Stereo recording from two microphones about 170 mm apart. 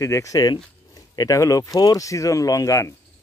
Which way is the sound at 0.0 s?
20° left (ahead or behind).